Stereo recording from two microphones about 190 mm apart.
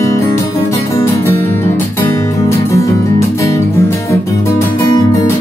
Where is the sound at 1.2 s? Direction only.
15° left (ahead or behind).